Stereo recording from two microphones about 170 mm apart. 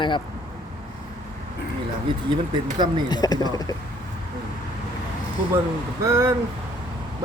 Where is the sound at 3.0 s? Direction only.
25° left (ahead or behind).